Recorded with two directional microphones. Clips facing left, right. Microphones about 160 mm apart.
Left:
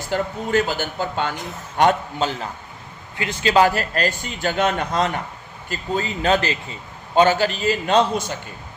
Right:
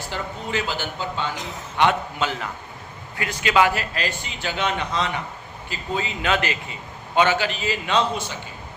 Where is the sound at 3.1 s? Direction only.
25° left (ahead or behind).